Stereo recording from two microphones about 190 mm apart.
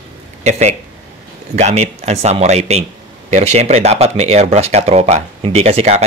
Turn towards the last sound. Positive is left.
turn(degrees=-35)  # may be behind; listen again after turning